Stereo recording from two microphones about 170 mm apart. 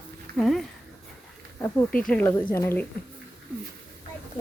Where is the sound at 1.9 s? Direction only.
5° left (ahead or behind).